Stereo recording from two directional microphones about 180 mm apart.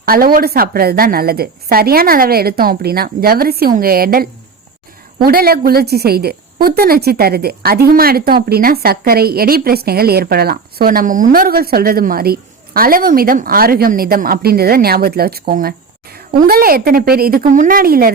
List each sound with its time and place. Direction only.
0.0 s a woman's voice: 55° right (ahead or behind)